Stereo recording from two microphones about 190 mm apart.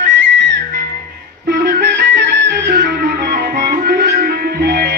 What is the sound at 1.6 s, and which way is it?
Music, 65° right (ahead or behind).